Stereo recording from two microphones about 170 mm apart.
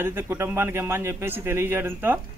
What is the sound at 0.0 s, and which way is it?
Speech, 15° right (ahead or behind).